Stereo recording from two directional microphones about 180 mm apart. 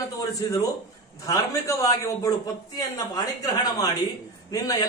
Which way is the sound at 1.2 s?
15° left (ahead or behind).